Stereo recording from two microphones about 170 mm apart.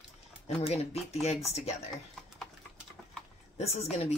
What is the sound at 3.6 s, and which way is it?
Speech, 40° left (ahead or behind).